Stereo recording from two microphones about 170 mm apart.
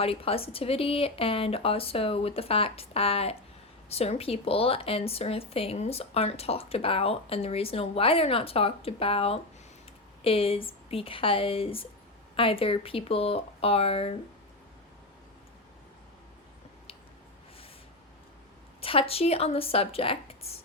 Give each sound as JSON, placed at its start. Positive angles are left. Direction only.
{"t": 0.0, "sound": "speech", "side_deg": 35}
{"t": 18.8, "sound": "speech", "side_deg": 35}